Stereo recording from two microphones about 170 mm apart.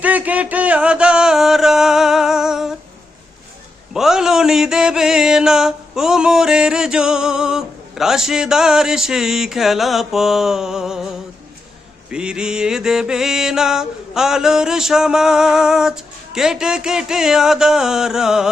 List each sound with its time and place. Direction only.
0.0 s music: 10° right (ahead or behind)
3.9 s mantra: 5° right (ahead or behind)
12.1 s music: 5° right (ahead or behind)